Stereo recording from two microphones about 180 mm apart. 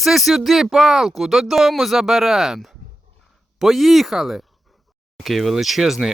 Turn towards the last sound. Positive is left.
turn(degrees=0)  # may be behind; listen again after turning